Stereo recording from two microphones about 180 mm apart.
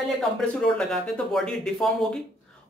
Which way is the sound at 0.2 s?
5° left (ahead or behind).